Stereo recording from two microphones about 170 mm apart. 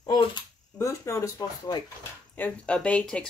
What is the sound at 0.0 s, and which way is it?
Speech, 25° left (ahead or behind).